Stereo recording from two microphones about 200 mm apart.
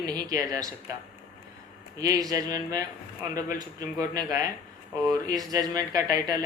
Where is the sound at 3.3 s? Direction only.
20° right (ahead or behind).